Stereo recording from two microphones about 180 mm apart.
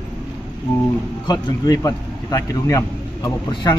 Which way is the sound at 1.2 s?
20° left (ahead or behind).